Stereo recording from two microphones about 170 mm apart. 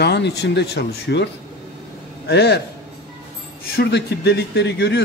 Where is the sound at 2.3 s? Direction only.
80° left.